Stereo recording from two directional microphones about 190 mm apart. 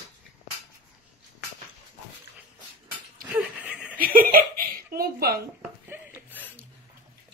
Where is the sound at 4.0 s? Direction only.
50° right (ahead or behind).